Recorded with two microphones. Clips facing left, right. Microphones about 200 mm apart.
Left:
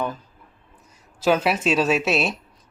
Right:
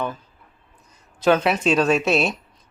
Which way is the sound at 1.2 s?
5° left (ahead or behind).